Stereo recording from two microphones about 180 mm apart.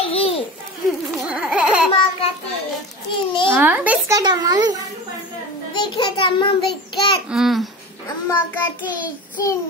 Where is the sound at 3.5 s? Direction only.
10° right (ahead or behind).